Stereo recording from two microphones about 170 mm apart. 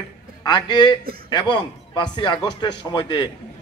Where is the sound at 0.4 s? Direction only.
25° left (ahead or behind).